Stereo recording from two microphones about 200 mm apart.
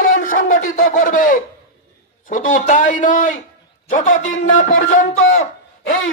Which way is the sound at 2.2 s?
40° left (ahead or behind).